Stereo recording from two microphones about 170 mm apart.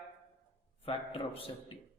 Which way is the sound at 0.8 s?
30° left (ahead or behind).